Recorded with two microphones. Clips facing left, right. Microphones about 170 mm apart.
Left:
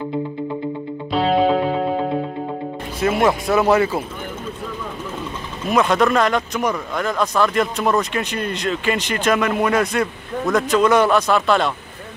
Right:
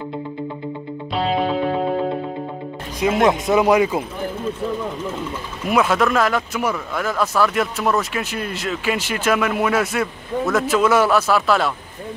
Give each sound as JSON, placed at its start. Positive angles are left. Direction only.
{"t": 1.1, "sound": "music", "side_deg": 0}
{"t": 3.0, "sound": "speech", "side_deg": -15}
{"t": 5.7, "sound": "speech", "side_deg": -5}